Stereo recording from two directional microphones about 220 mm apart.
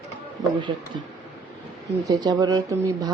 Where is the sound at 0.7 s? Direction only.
20° right (ahead or behind).